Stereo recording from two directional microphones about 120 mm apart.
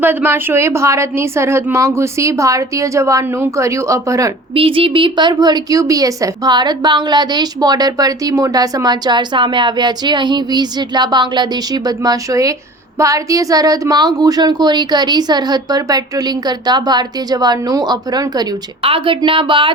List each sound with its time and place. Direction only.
0.0 s a woman's voice: 15° right (ahead or behind)
4.5 s a woman's voice: 50° right (ahead or behind); by 18.4 s 35° right (ahead or behind)
18.8 s speech: 50° right (ahead or behind)